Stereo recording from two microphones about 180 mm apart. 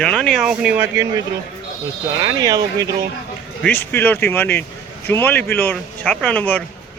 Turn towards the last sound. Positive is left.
turn(degrees=10)  # may be behind; listen again after turning